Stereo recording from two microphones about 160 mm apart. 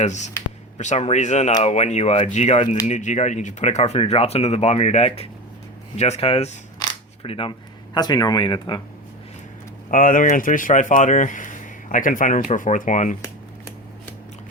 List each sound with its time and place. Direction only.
0.0 s speech: 45° left (ahead or behind)
6.7 s camera: 25° left (ahead or behind)
7.3 s speech: 35° left (ahead or behind)
9.9 s speech: 55° left (ahead or behind)